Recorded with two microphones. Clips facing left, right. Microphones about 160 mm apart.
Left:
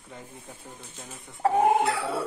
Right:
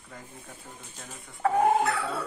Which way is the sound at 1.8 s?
15° left (ahead or behind).